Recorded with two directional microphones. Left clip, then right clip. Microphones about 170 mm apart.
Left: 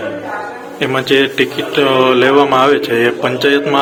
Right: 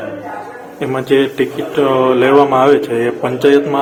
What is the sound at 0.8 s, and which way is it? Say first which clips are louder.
Speech: left 1 dB; 20° right (ahead or behind).